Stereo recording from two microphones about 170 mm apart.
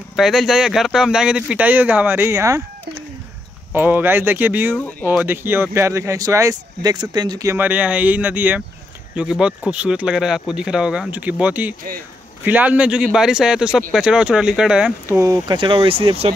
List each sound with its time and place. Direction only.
0.1 s speech: centre (ahead or behind); by 2.6 s 15° right (ahead or behind)
3.7 s speech: 10° right (ahead or behind)
15.1 s speech: 20° right (ahead or behind)